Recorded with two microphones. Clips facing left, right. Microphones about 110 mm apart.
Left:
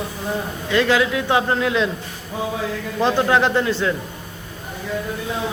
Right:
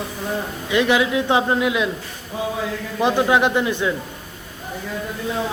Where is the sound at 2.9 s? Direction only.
15° right (ahead or behind).